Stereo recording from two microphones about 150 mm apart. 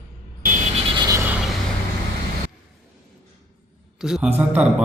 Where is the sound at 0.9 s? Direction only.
25° right (ahead or behind).